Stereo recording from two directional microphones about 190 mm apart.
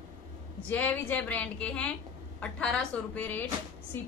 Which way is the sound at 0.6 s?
10° left (ahead or behind).